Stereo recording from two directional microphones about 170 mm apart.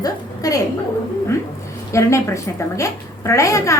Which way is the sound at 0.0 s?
20° left (ahead or behind).